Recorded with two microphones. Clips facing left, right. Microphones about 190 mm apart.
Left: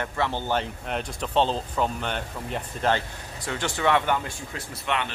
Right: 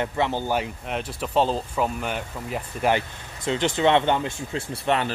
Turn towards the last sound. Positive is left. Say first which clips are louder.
# right 5 dB
turn(degrees=-35)  # may be behind; listen again after turning